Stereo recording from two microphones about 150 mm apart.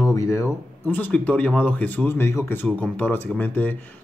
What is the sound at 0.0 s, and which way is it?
Speech, 20° left (ahead or behind).